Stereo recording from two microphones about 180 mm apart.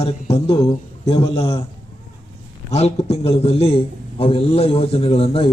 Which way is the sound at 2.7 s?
35° left (ahead or behind).